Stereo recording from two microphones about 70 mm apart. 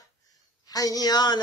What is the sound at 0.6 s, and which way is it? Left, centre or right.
Speech, left.